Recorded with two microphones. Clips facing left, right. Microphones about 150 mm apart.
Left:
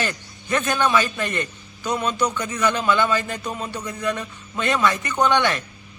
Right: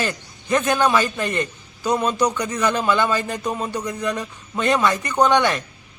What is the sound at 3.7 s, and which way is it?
Speech, 15° right (ahead or behind).